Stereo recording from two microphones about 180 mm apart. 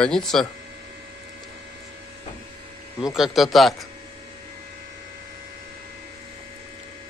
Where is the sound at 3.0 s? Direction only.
5° right (ahead or behind).